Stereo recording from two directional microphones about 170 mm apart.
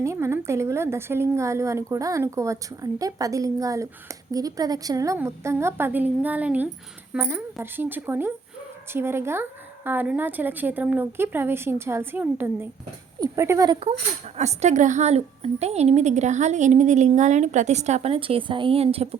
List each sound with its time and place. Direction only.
0.0 s speech: 15° right (ahead or behind)
14.3 s a woman's voice: 40° right (ahead or behind)